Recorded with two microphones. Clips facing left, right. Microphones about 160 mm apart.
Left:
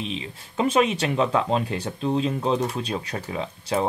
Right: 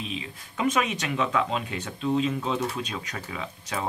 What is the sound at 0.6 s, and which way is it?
Speech, 30° left (ahead or behind).